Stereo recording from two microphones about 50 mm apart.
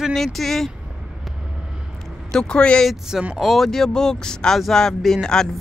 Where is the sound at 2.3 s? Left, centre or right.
Centre.